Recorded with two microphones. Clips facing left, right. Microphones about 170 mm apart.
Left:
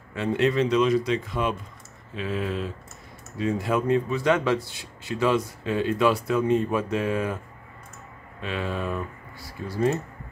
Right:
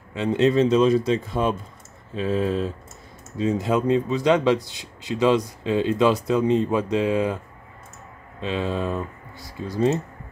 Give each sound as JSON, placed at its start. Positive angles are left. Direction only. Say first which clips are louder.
{"t": 0.1, "sound": "speech", "louder": "right 4 dB", "side_deg": -20}
{"t": 3.3, "sound": "speech", "louder": "right 3 dB", "side_deg": -20}
{"t": 8.4, "sound": "speech", "louder": "right 4 dB", "side_deg": -25}